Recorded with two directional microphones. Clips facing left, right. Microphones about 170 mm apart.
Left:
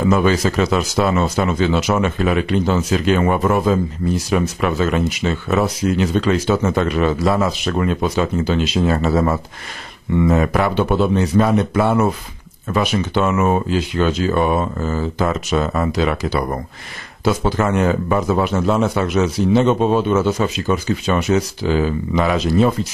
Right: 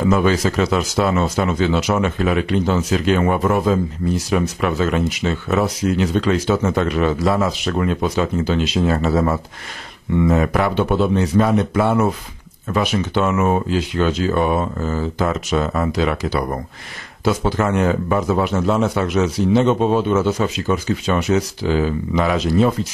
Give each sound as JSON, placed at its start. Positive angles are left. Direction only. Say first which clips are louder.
{"t": 0.1, "sound": "speech", "louder": "left 1 dB", "side_deg": 15}
{"t": 1.6, "sound": "speech", "louder": "left 1 dB", "side_deg": 10}